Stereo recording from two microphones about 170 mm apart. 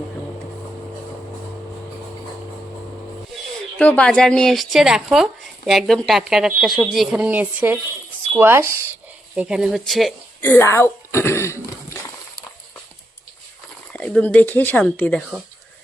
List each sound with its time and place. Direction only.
3.8 s speech: 5° left (ahead or behind)
10.4 s speech: 15° left (ahead or behind)
13.9 s speech: 10° left (ahead or behind)